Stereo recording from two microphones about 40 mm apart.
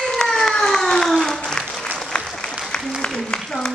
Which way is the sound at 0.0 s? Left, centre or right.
Centre.